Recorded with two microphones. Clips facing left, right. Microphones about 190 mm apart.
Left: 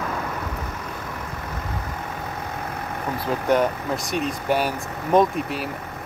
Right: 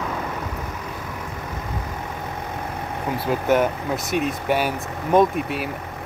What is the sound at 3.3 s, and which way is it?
Speech, 5° right (ahead or behind).